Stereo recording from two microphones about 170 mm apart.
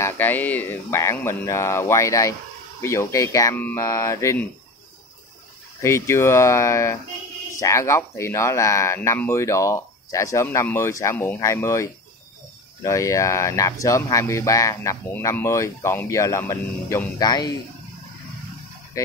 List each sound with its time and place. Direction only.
0.0 s speech: 10° left (ahead or behind)
5.8 s speech: 15° left (ahead or behind)
18.9 s speech: 20° left (ahead or behind)